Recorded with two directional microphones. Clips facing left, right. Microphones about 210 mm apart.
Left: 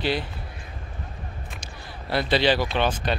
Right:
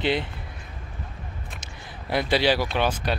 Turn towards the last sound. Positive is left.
turn(degrees=-10)  # may be behind; listen again after turning